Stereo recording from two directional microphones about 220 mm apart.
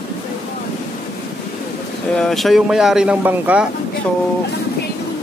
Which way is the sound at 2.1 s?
Centre (ahead or behind).